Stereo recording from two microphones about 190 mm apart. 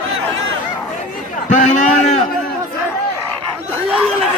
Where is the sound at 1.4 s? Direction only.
40° left (ahead or behind).